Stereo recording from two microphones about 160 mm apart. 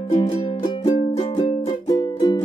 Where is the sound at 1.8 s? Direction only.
20° left (ahead or behind).